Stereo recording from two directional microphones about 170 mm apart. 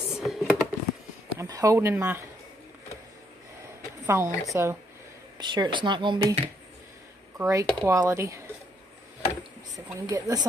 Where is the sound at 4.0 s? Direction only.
15° right (ahead or behind).